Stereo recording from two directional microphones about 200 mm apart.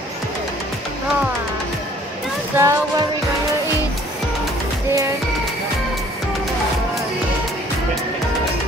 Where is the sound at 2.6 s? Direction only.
15° right (ahead or behind).